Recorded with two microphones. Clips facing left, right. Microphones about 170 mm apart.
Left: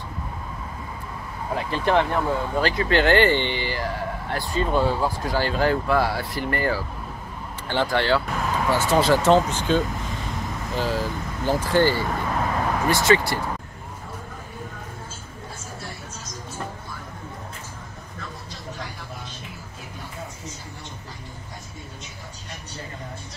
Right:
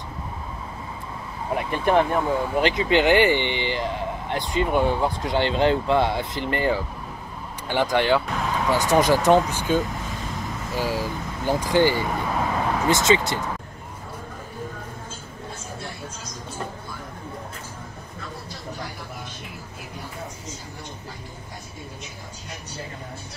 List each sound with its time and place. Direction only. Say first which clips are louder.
1.5 s speech: right 1 dB; 15° right (ahead or behind)